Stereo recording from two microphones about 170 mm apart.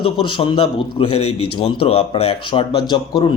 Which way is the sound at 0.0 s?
30° left (ahead or behind).